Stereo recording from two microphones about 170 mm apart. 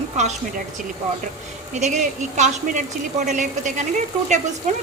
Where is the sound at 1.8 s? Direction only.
45° right (ahead or behind).